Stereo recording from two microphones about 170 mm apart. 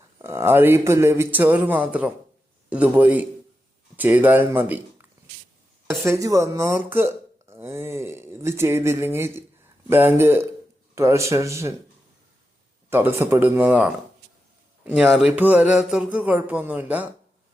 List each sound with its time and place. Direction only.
0.2 s speech: 15° right (ahead or behind)
6.1 s speech: 20° right (ahead or behind)
12.9 s speech: 15° right (ahead or behind)